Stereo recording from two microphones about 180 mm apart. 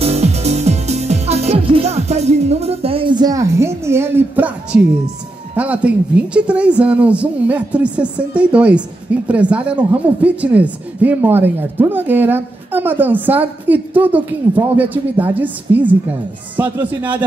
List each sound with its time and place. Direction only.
0.0 s music: 35° right (ahead or behind); by 4.8 s 10° right (ahead or behind)
5.6 s speech: 5° right (ahead or behind)